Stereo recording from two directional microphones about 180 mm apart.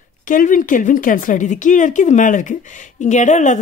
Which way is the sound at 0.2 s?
50° left (ahead or behind).